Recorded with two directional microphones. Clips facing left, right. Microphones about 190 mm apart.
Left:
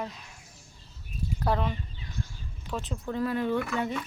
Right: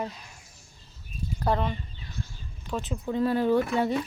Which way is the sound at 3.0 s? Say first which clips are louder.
Right 4 dB; 20° right (ahead or behind).